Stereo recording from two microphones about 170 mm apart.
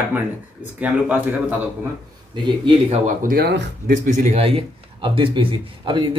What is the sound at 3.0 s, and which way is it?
Speech, 55° right (ahead or behind).